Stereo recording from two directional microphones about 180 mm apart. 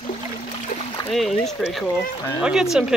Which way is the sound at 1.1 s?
Centre (ahead or behind).